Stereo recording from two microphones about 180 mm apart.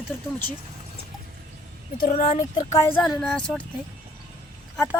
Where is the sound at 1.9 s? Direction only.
50° left (ahead or behind).